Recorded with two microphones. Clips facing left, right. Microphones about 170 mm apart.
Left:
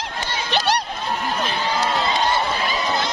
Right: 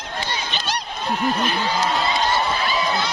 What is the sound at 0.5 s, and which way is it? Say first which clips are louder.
Run: left 10 dB; 70° left (ahead or behind).